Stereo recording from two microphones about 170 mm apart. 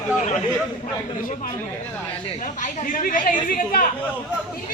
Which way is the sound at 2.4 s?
50° left (ahead or behind).